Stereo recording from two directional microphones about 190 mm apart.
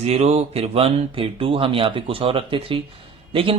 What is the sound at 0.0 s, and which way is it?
Speech, 35° right (ahead or behind).